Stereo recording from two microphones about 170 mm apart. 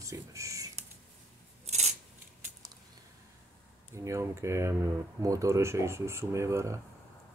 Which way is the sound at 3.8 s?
15° right (ahead or behind).